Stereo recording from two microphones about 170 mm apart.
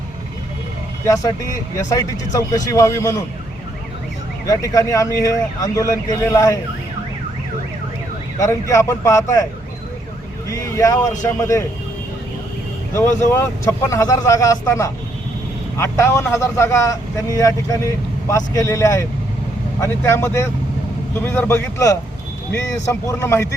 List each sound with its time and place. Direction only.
1.0 s speech: 20° left (ahead or behind)
4.4 s speech: 20° left (ahead or behind)
8.4 s speech: 20° left (ahead or behind)
10.5 s speech: 20° left (ahead or behind)
12.9 s speech: 15° left (ahead or behind)